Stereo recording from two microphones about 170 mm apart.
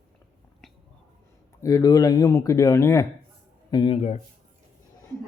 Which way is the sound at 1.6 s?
20° left (ahead or behind).